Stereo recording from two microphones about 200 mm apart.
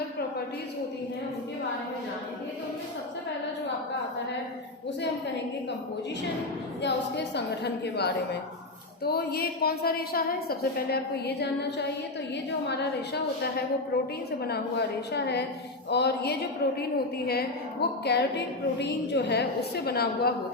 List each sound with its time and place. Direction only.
6.8 s a woman's voice: 60° left (ahead or behind)
14.4 s a woman's voice: 55° left (ahead or behind)